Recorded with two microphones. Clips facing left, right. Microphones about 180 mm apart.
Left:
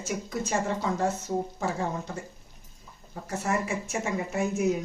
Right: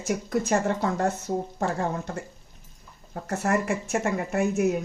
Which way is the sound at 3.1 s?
65° right (ahead or behind).